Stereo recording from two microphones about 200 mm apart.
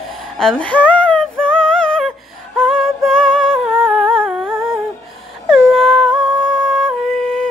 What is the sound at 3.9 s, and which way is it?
Humming, 5° left (ahead or behind).